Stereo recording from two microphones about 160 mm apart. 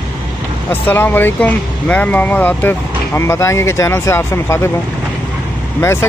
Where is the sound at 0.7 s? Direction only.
15° left (ahead or behind).